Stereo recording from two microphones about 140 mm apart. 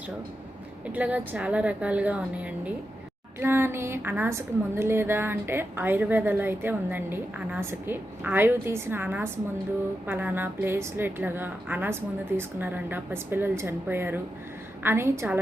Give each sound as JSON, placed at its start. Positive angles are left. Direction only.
{"t": 0.9, "sound": "a woman's voice", "side_deg": -10}